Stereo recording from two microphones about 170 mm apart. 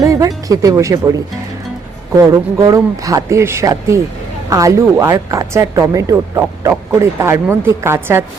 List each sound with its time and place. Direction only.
0.0 s speech: 20° right (ahead or behind)
2.1 s speech: 20° right (ahead or behind)